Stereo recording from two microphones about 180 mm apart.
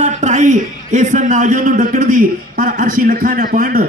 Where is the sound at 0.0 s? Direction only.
40° right (ahead or behind).